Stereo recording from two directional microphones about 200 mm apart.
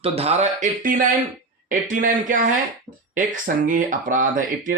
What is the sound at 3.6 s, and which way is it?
Speech, 40° right (ahead or behind).